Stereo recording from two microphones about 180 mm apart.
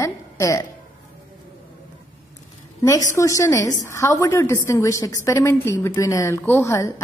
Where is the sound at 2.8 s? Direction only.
20° left (ahead or behind).